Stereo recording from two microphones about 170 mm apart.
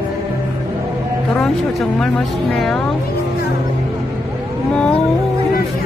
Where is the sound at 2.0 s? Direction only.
5° left (ahead or behind).